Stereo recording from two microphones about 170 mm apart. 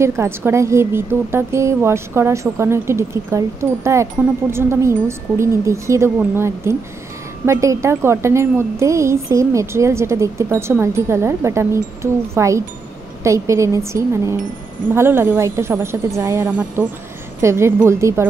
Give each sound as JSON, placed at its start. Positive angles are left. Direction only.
{"t": 0.0, "sound": "a woman's voice", "side_deg": -15}